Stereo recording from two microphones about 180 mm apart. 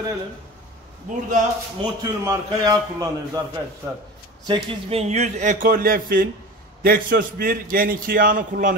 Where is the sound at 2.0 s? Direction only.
20° right (ahead or behind).